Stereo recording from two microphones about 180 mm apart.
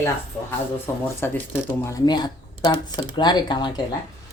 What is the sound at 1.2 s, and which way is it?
Speech, 10° left (ahead or behind).